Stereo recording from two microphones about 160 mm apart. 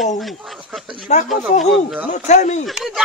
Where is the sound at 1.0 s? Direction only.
50° left (ahead or behind).